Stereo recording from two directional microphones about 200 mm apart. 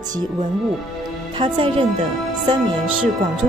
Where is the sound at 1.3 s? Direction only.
25° right (ahead or behind).